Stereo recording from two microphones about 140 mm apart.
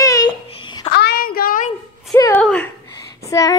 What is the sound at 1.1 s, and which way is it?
Speech, 90° left.